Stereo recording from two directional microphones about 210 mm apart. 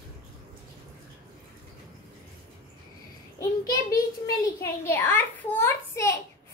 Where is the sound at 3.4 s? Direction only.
15° left (ahead or behind).